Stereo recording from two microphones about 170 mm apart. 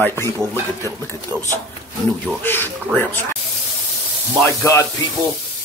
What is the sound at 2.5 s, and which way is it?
Speech, 10° left (ahead or behind).